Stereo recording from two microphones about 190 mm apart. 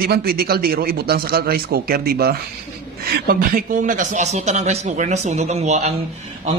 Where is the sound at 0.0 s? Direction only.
50° right (ahead or behind).